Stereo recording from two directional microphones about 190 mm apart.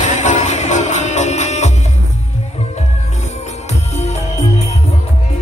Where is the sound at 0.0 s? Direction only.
40° left (ahead or behind).